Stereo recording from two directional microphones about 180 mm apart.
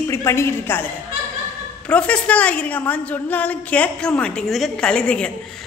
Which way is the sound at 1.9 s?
5° left (ahead or behind).